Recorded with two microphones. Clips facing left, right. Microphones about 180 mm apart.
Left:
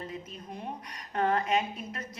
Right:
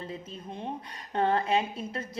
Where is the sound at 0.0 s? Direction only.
25° right (ahead or behind).